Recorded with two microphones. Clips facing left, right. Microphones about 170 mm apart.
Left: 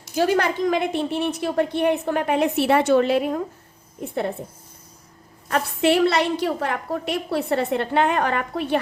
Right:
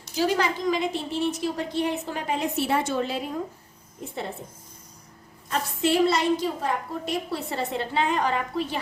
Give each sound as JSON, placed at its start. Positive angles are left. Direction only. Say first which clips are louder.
{"t": 0.1, "sound": "a woman's voice", "louder": "left 4 dB", "side_deg": 55}
{"t": 5.5, "sound": "a woman's voice", "louder": "left 5 dB", "side_deg": 65}